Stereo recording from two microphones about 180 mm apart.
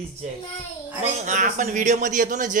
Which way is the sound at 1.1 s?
45° right (ahead or behind).